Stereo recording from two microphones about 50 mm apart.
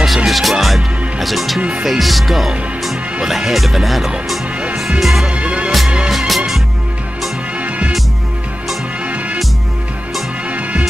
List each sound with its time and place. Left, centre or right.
0.0 s music: centre
1.9 s speech: centre
5.0 s music: centre
5.3 s music: right
5.7 s music: centre
7.5 s music: right
9.0 s music: right
10.5 s music: right